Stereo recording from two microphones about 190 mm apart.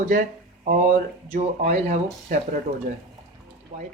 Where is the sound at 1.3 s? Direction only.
35° right (ahead or behind).